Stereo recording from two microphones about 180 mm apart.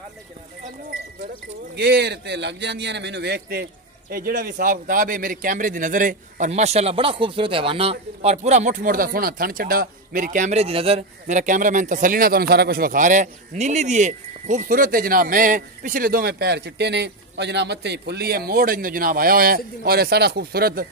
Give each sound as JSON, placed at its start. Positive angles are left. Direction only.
{"t": 1.8, "sound": "a man's voice", "side_deg": -65}